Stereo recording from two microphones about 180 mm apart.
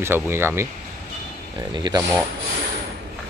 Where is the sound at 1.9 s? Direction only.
20° right (ahead or behind).